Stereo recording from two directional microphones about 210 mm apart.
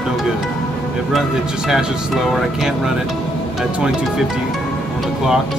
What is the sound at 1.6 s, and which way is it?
Speech, centre (ahead or behind).